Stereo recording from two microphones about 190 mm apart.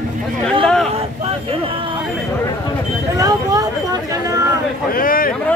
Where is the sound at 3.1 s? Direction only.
20° right (ahead or behind).